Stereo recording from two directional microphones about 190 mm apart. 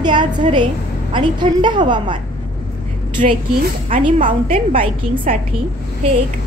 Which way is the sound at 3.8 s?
40° right (ahead or behind).